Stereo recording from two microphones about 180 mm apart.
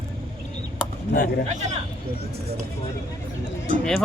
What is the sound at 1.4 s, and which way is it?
Speech, 40° right (ahead or behind).